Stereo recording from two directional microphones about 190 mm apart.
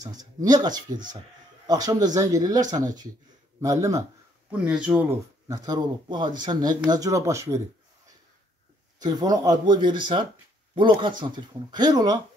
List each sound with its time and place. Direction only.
0.0 s speech: 20° right (ahead or behind)
3.6 s speech: 15° right (ahead or behind)
4.5 s speech: 5° right (ahead or behind)
5.5 s speech: 20° right (ahead or behind)
9.0 s speech: 20° right (ahead or behind)